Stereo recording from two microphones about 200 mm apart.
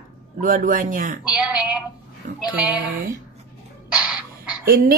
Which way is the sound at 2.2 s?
40° right (ahead or behind).